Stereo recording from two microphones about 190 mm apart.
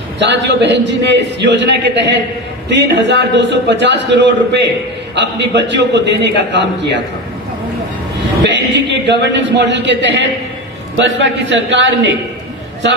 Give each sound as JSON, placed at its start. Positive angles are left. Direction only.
{"t": 0.2, "sound": "a man's voice", "side_deg": -65}
{"t": 8.5, "sound": "a man's voice", "side_deg": -70}